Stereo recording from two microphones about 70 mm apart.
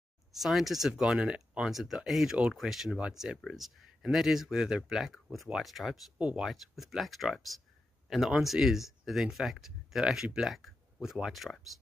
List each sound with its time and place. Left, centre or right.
0.3 s speech: centre
1.7 s speech: centre
6.1 s speech: centre
6.4 s speech: centre